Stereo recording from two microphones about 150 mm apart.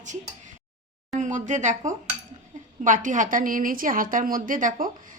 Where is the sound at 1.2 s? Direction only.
55° right (ahead or behind).